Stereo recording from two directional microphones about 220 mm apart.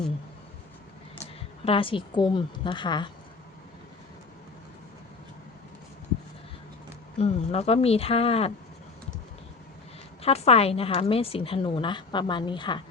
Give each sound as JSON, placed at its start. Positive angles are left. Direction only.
{"t": 1.6, "sound": "a woman's voice", "side_deg": 25}
{"t": 7.2, "sound": "a woman's voice", "side_deg": 30}
{"t": 10.2, "sound": "a woman's voice", "side_deg": 30}